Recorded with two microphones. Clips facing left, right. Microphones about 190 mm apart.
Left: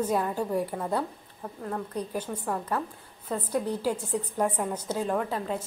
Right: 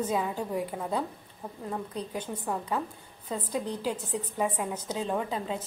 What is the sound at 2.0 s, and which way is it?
Speech, 10° left (ahead or behind).